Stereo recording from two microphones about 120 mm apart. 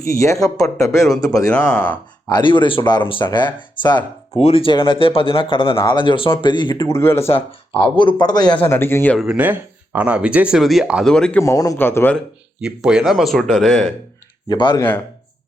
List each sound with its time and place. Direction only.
0.2 s speech: 25° left (ahead or behind)
1.5 s speech: 10° left (ahead or behind)
2.3 s speech: 40° left (ahead or behind)
4.4 s speech: 55° left (ahead or behind); by 6.7 s 40° left (ahead or behind)
6.7 s speech: 25° left (ahead or behind)
7.3 s speech: 50° left (ahead or behind)
8.5 s speech: 20° left (ahead or behind)
9.1 s speech: 10° right (ahead or behind)
11.0 s speech: 5° left (ahead or behind)
11.3 s speech: 25° left (ahead or behind)
11.8 s speech: 20° left (ahead or behind)
12.5 s speech: 5° right (ahead or behind)
14.4 s speech: 40° left (ahead or behind)
14.8 s speech: 20° left (ahead or behind)